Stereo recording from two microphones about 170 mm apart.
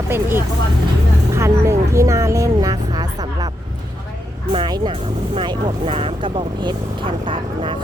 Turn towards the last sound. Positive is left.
turn(degrees=-30)  # may be behind; listen again after turning